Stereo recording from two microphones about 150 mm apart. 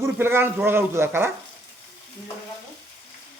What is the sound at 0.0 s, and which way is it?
Speech, 15° right (ahead or behind).